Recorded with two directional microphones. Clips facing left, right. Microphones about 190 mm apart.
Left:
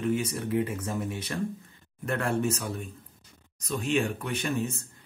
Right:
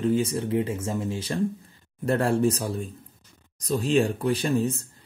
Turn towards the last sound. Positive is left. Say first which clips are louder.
# right 6 dB
turn(degrees=-35)  # may be behind; listen again after turning